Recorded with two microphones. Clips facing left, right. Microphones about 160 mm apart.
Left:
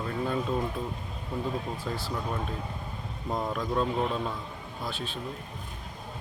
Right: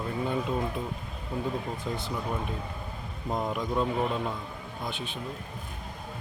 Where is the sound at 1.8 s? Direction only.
20° right (ahead or behind).